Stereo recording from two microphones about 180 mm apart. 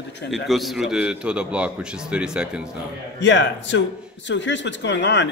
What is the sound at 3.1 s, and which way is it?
A man's voice, 80° left.